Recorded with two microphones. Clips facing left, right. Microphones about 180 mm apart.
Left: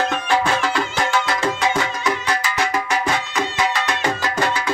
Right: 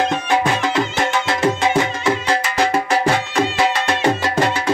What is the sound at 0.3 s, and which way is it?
Music, 20° right (ahead or behind).